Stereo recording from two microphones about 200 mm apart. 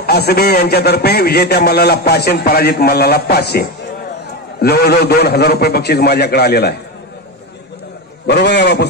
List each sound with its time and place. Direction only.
0.0 s a man's voice: 50° left (ahead or behind)
8.3 s a man's voice: 60° left (ahead or behind)